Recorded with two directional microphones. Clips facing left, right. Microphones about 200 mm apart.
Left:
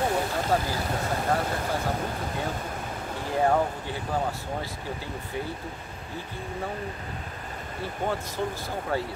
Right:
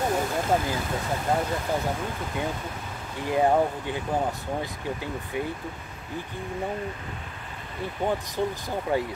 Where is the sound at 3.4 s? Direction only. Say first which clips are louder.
Right 2 dB; 15° right (ahead or behind).